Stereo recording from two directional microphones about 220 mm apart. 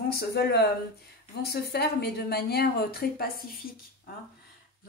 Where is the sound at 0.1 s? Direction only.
45° left (ahead or behind).